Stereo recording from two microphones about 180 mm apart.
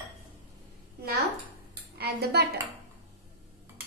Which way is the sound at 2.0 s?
65° right (ahead or behind).